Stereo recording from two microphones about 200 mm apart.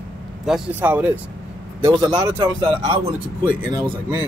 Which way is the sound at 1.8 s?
20° right (ahead or behind).